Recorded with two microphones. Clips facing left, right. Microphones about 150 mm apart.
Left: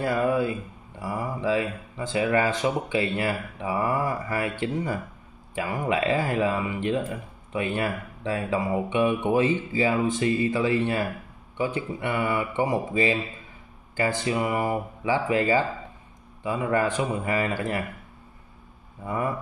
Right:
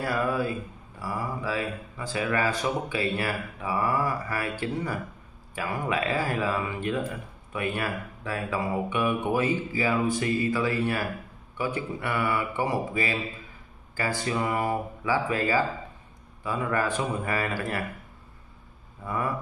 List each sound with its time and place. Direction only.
0.0 s speech: 20° left (ahead or behind)
19.0 s speech: 20° left (ahead or behind)